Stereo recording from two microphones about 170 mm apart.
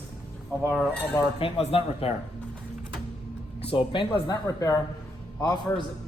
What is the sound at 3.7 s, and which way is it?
A man's voice, 30° left (ahead or behind).